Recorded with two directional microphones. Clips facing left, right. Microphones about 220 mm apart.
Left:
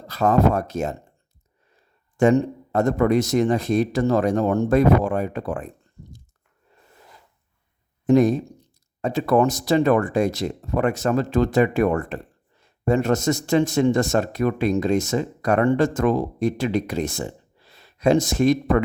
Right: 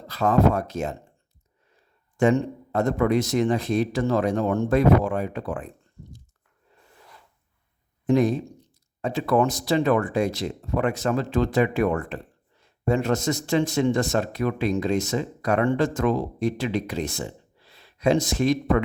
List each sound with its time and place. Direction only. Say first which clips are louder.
0.1 s a man's voice: left 2 dB; 45° left (ahead or behind)
2.1 s a man's voice: left 3 dB; 45° left (ahead or behind)
8.0 s a man's voice: left 4 dB; 45° left (ahead or behind)